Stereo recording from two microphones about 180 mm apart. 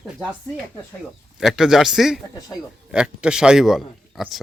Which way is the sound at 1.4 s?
Centre (ahead or behind).